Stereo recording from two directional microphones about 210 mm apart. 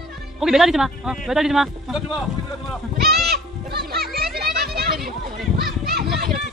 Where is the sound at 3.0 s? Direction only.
50° right (ahead or behind).